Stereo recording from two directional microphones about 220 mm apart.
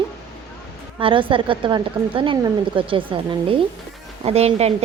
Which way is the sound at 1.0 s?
25° right (ahead or behind).